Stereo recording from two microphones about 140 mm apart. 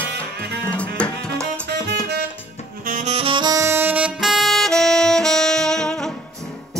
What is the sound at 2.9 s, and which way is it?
Saxophone, 65° right (ahead or behind).